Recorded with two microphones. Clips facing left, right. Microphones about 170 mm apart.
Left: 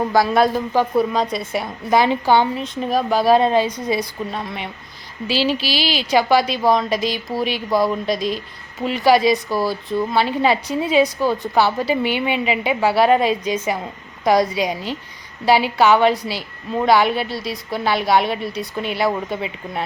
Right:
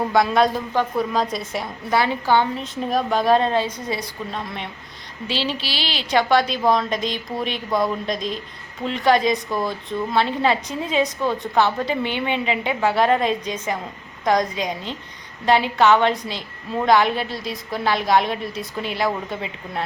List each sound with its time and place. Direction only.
0.1 s a woman's voice: 5° left (ahead or behind)
1.9 s a woman's voice: 15° left (ahead or behind)
2.6 s a woman's voice: centre (ahead or behind)